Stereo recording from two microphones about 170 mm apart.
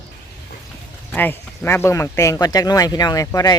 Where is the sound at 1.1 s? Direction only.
10° left (ahead or behind).